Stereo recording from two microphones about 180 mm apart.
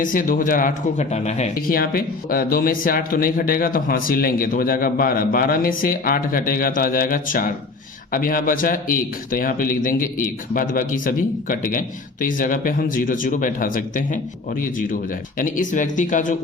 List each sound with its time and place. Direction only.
0.0 s speech: 50° left (ahead or behind)
1.5 s speech: 55° left (ahead or behind)